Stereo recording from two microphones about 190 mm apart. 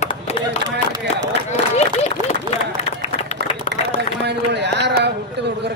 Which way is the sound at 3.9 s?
60° right (ahead or behind).